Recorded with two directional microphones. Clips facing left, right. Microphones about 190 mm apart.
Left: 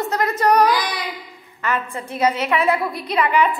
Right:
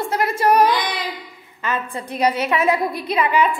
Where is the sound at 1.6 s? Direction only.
25° right (ahead or behind).